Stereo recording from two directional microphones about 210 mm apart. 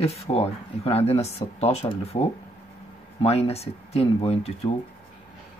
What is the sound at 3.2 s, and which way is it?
Speech, 30° left (ahead or behind).